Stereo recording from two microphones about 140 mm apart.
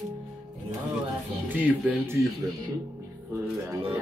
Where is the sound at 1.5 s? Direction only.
10° right (ahead or behind).